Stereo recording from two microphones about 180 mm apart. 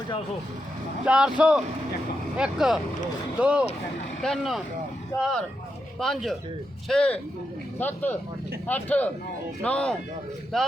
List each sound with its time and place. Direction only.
1.0 s speech: 5° right (ahead or behind)